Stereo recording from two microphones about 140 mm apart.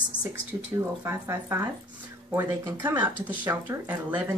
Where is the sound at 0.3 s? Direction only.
15° right (ahead or behind).